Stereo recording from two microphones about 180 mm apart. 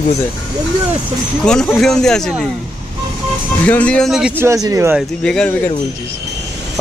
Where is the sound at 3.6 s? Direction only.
10° left (ahead or behind).